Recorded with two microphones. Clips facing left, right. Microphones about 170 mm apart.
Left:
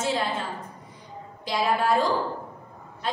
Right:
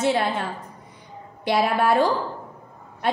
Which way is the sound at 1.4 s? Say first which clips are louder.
Right 4 dB; 65° right (ahead or behind).